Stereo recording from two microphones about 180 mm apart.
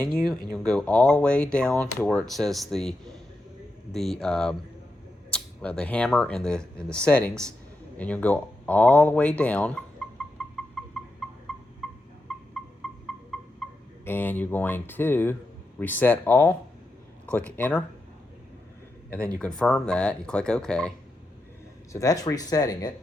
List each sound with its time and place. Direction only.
0.5 s speech: 5° left (ahead or behind)
10.4 s a sound: 5° right (ahead or behind)
14.0 s speech: 10° left (ahead or behind)
19.4 s speech: 5° left (ahead or behind)
21.9 s speech: 20° left (ahead or behind)